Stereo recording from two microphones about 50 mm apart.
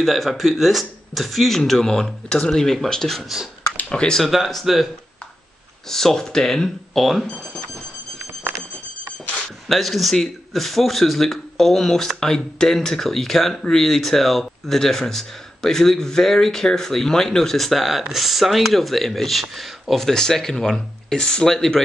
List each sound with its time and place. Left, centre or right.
0.0 s speech: centre
3.9 s a man's voice: centre
4.2 s speech: centre
5.9 s a man's voice: centre
9.7 s a man's voice: centre